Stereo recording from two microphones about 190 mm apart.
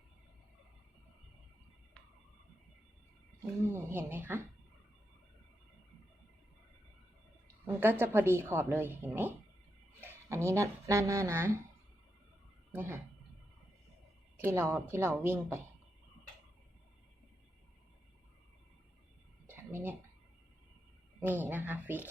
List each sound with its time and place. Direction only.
3.4 s a woman's voice: 15° right (ahead or behind)
7.4 s a woman's voice: 10° right (ahead or behind)
12.7 s a woman's voice: 10° right (ahead or behind)
14.4 s a woman's voice: 10° right (ahead or behind)
19.5 s a sound: 10° right (ahead or behind)
21.2 s a woman's voice: 10° right (ahead or behind)